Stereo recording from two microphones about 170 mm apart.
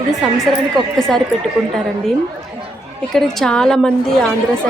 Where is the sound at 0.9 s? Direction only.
5° left (ahead or behind).